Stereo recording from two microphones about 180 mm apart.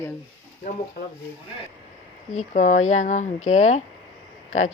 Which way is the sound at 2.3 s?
45° left (ahead or behind).